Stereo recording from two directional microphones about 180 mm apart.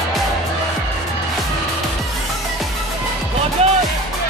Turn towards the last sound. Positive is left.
turn(degrees=-35)  # may be behind; listen again after turning